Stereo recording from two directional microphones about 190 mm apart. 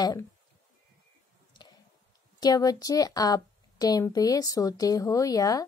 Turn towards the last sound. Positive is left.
turn(degrees=20)  # may be behind; listen again after turning